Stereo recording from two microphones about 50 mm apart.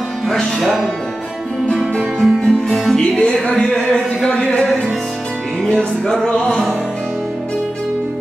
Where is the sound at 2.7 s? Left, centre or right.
Centre.